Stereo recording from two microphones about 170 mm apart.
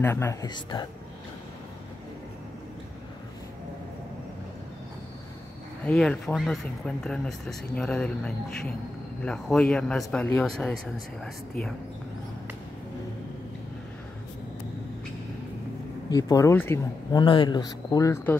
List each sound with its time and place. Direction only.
0.0 s speech: 15° left (ahead or behind)
5.9 s speech: 5° left (ahead or behind)
16.1 s speech: 20° left (ahead or behind)
17.2 s speech: 30° left (ahead or behind); by 18.4 s 15° left (ahead or behind)